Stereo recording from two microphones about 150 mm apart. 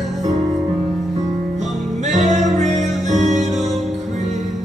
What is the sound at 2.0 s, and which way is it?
Music, 50° right (ahead or behind).